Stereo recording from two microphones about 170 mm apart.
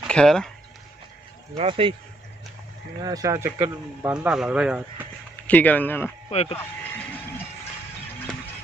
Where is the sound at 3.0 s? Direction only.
20° right (ahead or behind).